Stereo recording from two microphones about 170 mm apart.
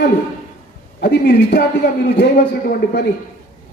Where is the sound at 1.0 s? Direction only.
60° left (ahead or behind).